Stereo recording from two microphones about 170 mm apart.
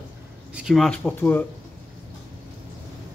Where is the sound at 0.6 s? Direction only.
Centre (ahead or behind).